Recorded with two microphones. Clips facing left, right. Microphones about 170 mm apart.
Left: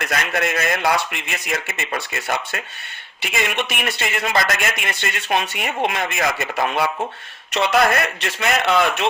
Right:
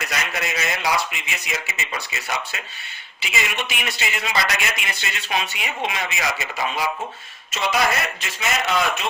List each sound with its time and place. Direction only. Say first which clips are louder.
0.0 s speech: left 5 dB; 55° left (ahead or behind)